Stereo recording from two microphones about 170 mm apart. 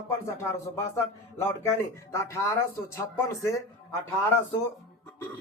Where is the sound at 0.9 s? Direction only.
15° left (ahead or behind).